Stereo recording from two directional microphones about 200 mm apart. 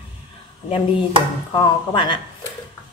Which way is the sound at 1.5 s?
20° left (ahead or behind).